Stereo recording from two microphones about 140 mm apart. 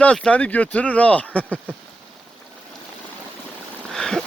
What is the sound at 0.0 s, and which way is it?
Speech, 10° left (ahead or behind).